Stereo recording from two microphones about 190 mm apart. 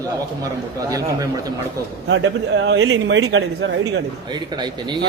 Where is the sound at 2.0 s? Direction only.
80° right.